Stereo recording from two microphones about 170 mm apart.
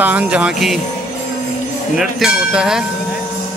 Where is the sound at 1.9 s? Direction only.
Centre (ahead or behind).